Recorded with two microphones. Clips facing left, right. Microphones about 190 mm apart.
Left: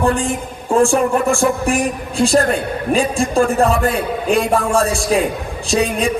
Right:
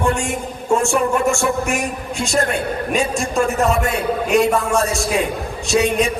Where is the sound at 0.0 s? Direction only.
35° left (ahead or behind).